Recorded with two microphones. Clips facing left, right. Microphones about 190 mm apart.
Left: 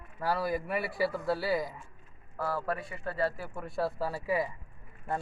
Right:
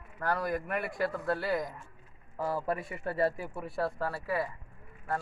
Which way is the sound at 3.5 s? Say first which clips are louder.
Left 1 dB; 5° right (ahead or behind).